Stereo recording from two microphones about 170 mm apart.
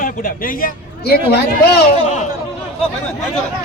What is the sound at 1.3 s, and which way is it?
Speech, 75° left (ahead or behind).